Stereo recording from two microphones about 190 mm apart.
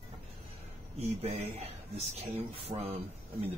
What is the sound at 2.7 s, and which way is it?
Speech, 35° right (ahead or behind).